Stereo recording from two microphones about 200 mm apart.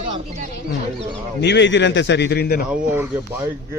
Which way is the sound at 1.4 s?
60° left (ahead or behind).